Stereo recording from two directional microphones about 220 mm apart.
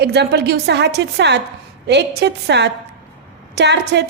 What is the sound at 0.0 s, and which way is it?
A woman's voice, 50° right (ahead or behind).